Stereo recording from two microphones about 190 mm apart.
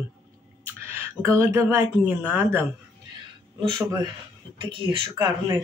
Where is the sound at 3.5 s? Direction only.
25° right (ahead or behind).